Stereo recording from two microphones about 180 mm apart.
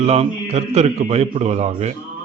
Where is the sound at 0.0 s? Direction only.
35° right (ahead or behind).